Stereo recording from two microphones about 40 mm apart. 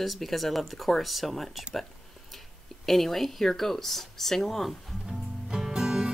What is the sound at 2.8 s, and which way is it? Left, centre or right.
Speech, centre.